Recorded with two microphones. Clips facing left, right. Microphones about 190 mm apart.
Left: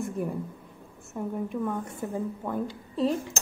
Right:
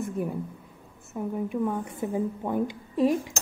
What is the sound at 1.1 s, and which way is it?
A woman's voice, 5° right (ahead or behind).